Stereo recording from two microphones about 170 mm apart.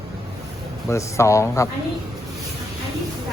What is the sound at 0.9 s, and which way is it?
Speech, 15° left (ahead or behind).